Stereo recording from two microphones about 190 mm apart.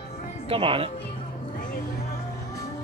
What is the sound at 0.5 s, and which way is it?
Speech, 30° right (ahead or behind).